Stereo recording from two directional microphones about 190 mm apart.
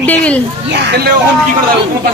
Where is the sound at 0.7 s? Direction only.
60° right (ahead or behind).